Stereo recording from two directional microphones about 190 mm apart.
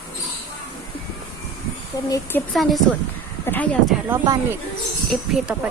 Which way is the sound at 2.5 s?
Centre (ahead or behind).